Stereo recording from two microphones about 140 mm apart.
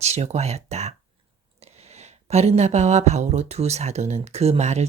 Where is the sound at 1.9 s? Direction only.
50° right (ahead or behind).